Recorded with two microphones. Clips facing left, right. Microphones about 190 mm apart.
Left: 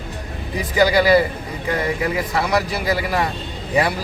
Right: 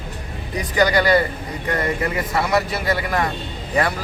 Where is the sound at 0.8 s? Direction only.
5° left (ahead or behind).